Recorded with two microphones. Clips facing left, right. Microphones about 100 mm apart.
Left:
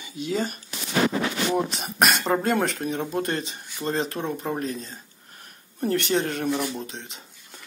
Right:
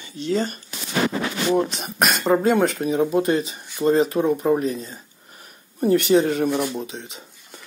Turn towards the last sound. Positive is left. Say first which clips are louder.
# right 4 dB
turn(degrees=0)  # may be behind; listen again after turning